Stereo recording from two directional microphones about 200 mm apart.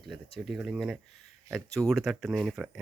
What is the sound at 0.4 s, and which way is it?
Speech, 5° right (ahead or behind).